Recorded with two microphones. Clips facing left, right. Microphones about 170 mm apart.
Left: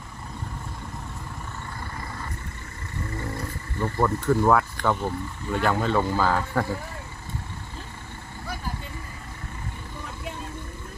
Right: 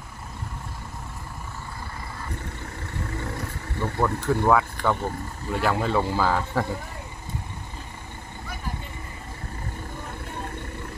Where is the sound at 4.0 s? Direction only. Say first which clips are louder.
Left 2 dB; centre (ahead or behind).